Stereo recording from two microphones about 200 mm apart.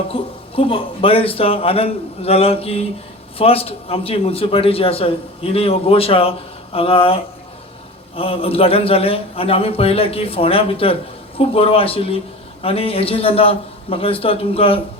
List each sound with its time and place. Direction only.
0.1 s a man's voice: 25° left (ahead or behind)